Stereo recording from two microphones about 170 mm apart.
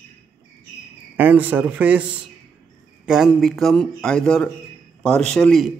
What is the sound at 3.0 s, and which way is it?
A man's voice, 5° right (ahead or behind).